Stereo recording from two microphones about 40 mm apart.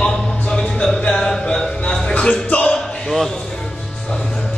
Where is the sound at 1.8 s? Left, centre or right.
Left.